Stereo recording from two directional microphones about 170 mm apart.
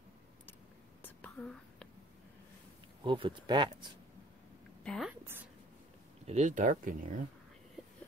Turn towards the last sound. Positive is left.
turn(degrees=-50)  # may be behind; listen again after turning